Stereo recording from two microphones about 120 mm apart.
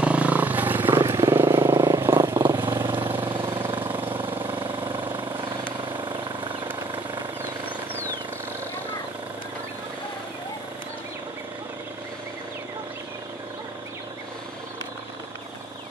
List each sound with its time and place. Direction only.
0.0 s vehicle: 10° right (ahead or behind)
3.3 s vehicle: 45° right (ahead or behind)
3.9 s vehicle: 15° right (ahead or behind)
5.7 s vehicle: 40° right (ahead or behind)